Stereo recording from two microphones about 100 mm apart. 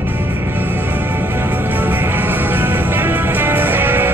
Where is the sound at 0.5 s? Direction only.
20° right (ahead or behind).